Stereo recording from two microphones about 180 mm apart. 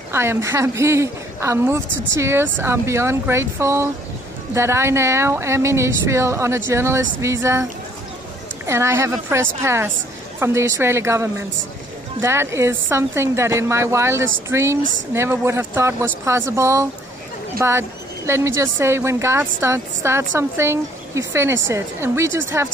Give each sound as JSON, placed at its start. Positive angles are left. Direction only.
{"t": 0.1, "sound": "a woman's voice", "side_deg": -15}
{"t": 8.6, "sound": "a woman's voice", "side_deg": -15}
{"t": 14.8, "sound": "a woman's voice", "side_deg": -90}
{"t": 15.1, "sound": "a woman's voice", "side_deg": -15}